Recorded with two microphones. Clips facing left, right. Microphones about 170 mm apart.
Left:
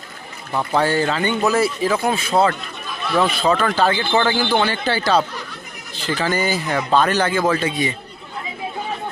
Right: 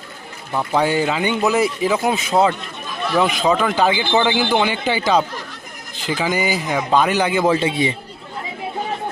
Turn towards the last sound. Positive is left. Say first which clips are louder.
# right 2 dB
turn(degrees=-25)  # may be behind; listen again after turning